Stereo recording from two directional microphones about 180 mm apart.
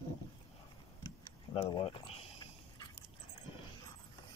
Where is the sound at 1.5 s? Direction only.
30° left (ahead or behind).